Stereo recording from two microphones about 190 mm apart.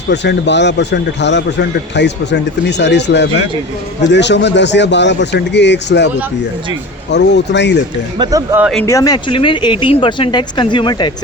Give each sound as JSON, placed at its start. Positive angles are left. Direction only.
{"t": 0.1, "sound": "speech", "side_deg": 65}
{"t": 7.1, "sound": "speech", "side_deg": 65}
{"t": 8.2, "sound": "speech", "side_deg": -20}
{"t": 8.8, "sound": "speech", "side_deg": 15}